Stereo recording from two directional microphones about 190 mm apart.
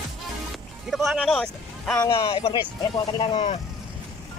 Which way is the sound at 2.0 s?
25° left (ahead or behind).